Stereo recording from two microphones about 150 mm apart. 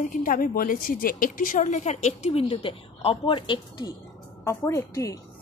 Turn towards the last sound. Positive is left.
turn(degrees=20)  # may be behind; listen again after turning